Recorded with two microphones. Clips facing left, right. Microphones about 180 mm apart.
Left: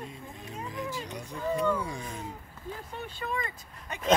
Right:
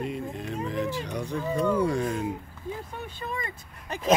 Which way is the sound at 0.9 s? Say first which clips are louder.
Right 7 dB; 70° right (ahead or behind).